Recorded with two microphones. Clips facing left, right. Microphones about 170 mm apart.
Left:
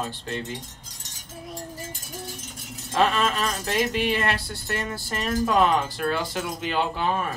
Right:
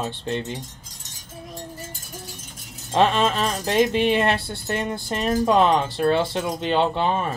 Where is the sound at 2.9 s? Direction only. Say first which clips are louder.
Right 3 dB; 30° right (ahead or behind).